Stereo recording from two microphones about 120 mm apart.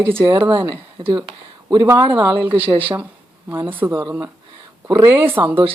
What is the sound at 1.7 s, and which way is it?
Speech, 25° right (ahead or behind).